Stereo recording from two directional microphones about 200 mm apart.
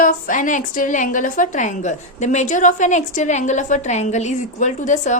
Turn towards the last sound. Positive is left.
turn(degrees=40)  # may be behind; listen again after turning